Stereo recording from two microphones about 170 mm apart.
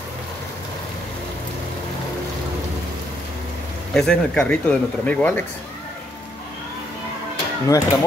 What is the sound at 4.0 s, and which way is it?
Speech, 5° left (ahead or behind).